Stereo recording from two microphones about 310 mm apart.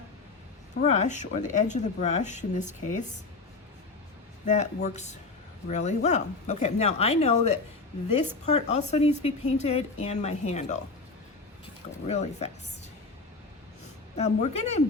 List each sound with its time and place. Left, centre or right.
0.8 s speech: left
4.4 s speech: left
12.0 s speech: left
14.2 s speech: left